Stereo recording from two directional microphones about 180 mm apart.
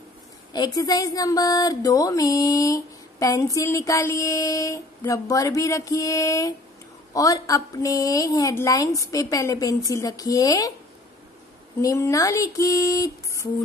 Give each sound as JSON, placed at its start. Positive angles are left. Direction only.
{"t": 0.5, "sound": "speech", "side_deg": 20}
{"t": 11.8, "sound": "speech", "side_deg": 15}